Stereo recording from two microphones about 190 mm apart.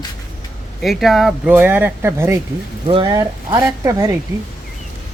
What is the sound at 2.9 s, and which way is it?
Speech, 25° right (ahead or behind).